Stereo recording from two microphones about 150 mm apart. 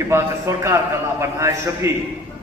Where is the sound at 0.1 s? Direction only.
20° right (ahead or behind).